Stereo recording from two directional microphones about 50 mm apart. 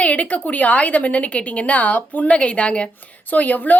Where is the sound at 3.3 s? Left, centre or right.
Left.